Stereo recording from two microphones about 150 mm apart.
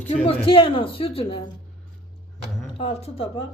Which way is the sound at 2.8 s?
40° left (ahead or behind).